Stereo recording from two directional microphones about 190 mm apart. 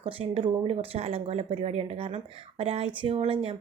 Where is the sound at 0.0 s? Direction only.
30° right (ahead or behind).